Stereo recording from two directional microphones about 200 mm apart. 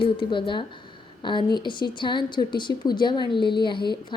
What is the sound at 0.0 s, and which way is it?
A woman's voice, 25° left (ahead or behind).